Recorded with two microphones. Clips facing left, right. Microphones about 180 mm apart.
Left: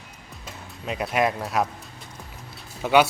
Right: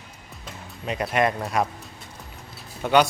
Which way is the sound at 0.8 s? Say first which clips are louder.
Right 1 dB; centre (ahead or behind).